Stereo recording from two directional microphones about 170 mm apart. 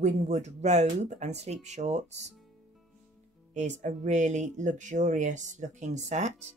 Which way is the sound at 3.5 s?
45° right (ahead or behind).